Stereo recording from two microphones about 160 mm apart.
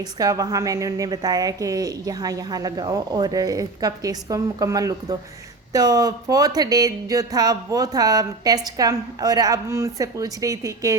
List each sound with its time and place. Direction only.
0.0 s speech: 20° right (ahead or behind)